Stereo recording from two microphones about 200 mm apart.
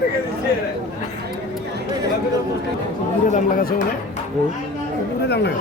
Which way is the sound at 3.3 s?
45° left (ahead or behind).